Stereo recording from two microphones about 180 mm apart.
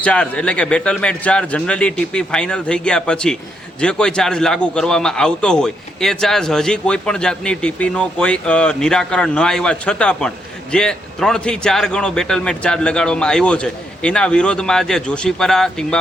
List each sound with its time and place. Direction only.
0.0 s a man's voice: 5° left (ahead or behind)